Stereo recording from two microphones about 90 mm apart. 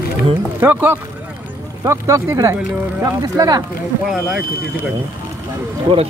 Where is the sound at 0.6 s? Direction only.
25° right (ahead or behind); by 3.6 s 40° right (ahead or behind).